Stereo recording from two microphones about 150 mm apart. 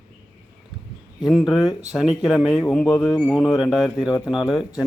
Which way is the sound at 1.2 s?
Centre (ahead or behind).